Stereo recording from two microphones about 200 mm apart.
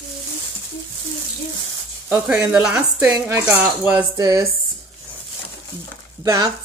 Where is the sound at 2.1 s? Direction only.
5° right (ahead or behind).